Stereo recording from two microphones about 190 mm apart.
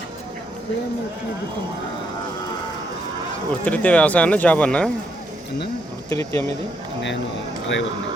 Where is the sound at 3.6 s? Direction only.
5° left (ahead or behind).